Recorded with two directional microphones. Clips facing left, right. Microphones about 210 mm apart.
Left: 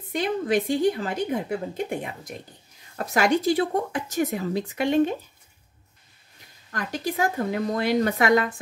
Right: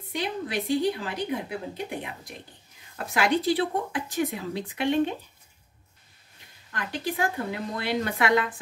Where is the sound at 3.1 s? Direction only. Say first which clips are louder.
Left 3 dB; 45° left (ahead or behind).